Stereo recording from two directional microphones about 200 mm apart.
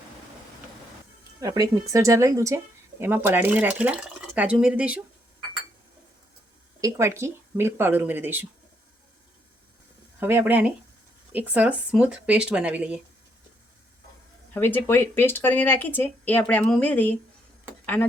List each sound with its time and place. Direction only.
1.4 s speech: 20° right (ahead or behind)
6.8 s speech: 15° right (ahead or behind)
10.2 s speech: 10° right (ahead or behind)
14.5 s speech: 10° left (ahead or behind)